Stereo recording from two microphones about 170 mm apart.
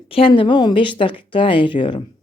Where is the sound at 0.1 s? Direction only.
30° left (ahead or behind).